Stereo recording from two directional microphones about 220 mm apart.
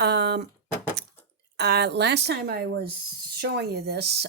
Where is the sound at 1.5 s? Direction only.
50° right (ahead or behind).